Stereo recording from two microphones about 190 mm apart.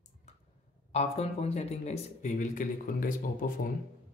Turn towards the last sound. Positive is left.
turn(degrees=45)  # may be behind; listen again after turning